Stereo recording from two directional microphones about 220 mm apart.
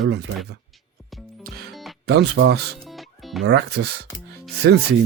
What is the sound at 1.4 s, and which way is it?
Music, 45° right (ahead or behind).